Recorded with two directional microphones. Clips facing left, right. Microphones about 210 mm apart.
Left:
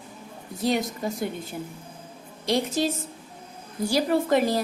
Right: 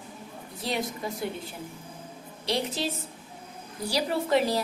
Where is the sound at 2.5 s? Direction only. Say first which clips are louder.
Left 5 dB; 45° left (ahead or behind).